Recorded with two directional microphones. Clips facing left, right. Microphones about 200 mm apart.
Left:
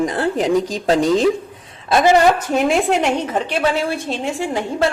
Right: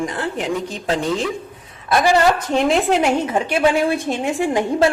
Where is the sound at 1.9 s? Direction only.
20° left (ahead or behind).